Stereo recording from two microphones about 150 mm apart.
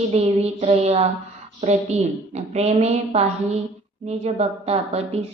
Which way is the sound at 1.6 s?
45° right (ahead or behind).